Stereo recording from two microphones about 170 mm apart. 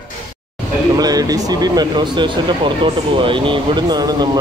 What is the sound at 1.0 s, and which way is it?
Speech, 20° right (ahead or behind).